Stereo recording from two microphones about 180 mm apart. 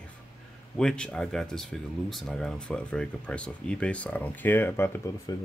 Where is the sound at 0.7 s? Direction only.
5° left (ahead or behind).